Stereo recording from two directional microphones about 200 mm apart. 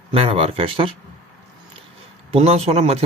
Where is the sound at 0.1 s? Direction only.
30° right (ahead or behind).